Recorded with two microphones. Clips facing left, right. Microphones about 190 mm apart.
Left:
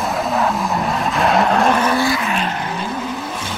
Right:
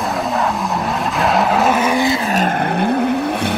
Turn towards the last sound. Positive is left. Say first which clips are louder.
# right 8 dB
turn(degrees=-60)  # may be behind; listen again after turning